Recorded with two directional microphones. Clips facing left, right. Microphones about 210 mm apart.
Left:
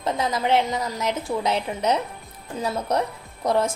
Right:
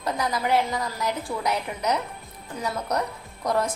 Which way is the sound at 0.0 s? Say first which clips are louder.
Left 2 dB; 25° left (ahead or behind).